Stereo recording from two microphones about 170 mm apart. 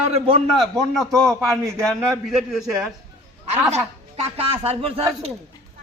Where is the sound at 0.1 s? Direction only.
30° right (ahead or behind).